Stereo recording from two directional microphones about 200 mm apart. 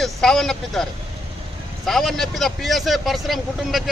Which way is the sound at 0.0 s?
Centre (ahead or behind).